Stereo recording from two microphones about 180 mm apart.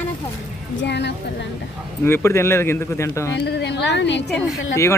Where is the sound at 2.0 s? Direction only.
15° left (ahead or behind).